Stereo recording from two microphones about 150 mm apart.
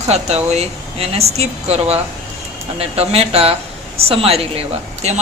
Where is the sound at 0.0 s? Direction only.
45° right (ahead or behind).